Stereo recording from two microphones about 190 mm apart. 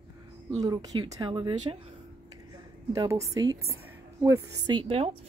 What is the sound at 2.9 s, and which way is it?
A woman's voice, 20° right (ahead or behind).